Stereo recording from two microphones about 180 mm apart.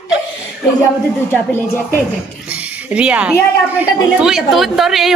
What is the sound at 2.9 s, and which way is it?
A woman's voice, 5° right (ahead or behind).